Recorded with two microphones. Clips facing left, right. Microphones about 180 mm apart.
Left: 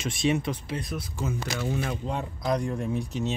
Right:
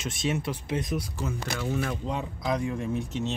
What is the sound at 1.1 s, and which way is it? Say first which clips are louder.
Speech: left 1 dB; 5° left (ahead or behind).